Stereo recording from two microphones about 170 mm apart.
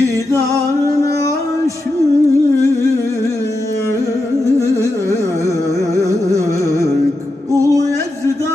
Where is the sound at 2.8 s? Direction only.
20° left (ahead or behind).